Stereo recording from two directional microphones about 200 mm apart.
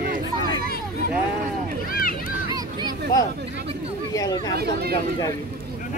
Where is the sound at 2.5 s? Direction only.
20° right (ahead or behind).